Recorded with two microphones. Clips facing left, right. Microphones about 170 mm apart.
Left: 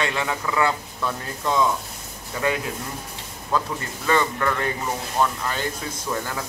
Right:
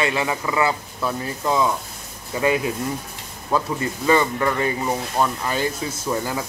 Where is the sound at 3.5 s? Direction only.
10° right (ahead or behind).